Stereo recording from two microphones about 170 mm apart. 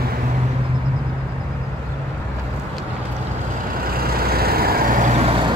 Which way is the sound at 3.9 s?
60° right (ahead or behind).